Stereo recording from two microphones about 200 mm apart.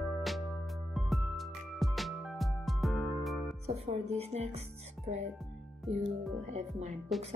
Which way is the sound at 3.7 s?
35° right (ahead or behind).